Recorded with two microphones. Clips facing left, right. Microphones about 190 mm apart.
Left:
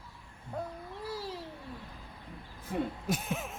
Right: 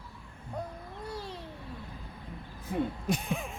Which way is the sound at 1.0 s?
5° left (ahead or behind).